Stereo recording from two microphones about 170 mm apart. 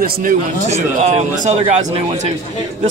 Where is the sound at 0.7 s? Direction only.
40° right (ahead or behind).